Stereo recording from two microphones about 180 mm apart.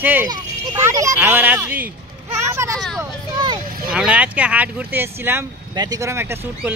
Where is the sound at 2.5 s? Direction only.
15° right (ahead or behind).